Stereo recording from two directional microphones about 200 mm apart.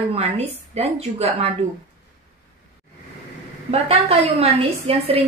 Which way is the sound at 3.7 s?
30° right (ahead or behind).